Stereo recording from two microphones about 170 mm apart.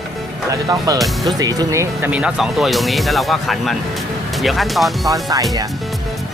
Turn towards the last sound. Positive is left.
turn(degrees=-20)  # may be behind; listen again after turning